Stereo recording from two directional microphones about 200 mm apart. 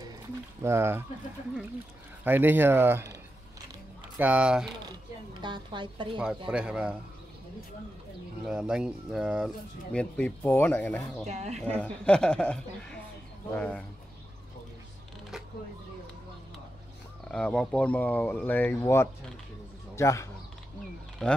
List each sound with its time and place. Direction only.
0.6 s speech: 10° right (ahead or behind)
2.2 s speech: 10° right (ahead or behind)
4.2 s speech: 5° right (ahead or behind)
4.8 s a sound: 20° right (ahead or behind)
6.1 s speech: 5° right (ahead or behind)
8.5 s speech: 5° right (ahead or behind)
11.2 s speech: 35° right (ahead or behind)
11.6 s speech: 5° left (ahead or behind)
17.3 s speech: 5° left (ahead or behind)
21.2 s speech: 5° left (ahead or behind)